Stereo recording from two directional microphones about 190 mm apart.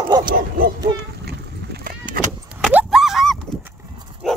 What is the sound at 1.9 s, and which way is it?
Vehicle, 45° right (ahead or behind).